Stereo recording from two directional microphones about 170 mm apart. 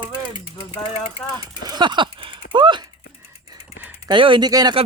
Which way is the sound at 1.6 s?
25° right (ahead or behind).